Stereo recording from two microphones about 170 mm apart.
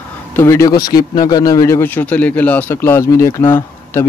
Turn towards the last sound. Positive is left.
turn(degrees=15)  # may be behind; listen again after turning